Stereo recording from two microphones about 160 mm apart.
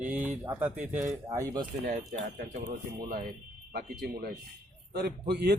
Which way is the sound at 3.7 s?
85° right.